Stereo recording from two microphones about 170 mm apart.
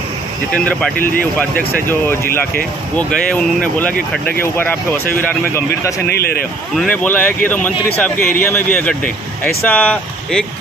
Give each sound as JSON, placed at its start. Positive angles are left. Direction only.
{"t": 0.5, "sound": "speech", "side_deg": 5}
{"t": 3.0, "sound": "speech", "side_deg": 5}
{"t": 6.0, "sound": "a man's voice", "side_deg": 70}
{"t": 6.8, "sound": "speech", "side_deg": 10}
{"t": 9.7, "sound": "speech", "side_deg": 10}